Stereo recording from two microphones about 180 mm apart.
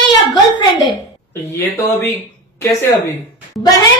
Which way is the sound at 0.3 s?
25° left (ahead or behind).